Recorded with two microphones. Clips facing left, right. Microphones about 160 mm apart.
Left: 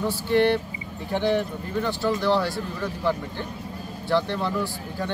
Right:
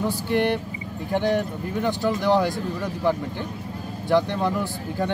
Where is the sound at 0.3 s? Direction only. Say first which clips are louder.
Left 3 dB; 15° right (ahead or behind).